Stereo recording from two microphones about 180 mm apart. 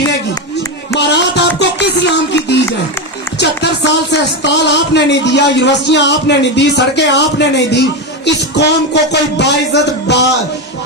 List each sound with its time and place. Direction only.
0.9 s music: 70° left (ahead or behind)
3.3 s a man's voice: 70° left (ahead or behind)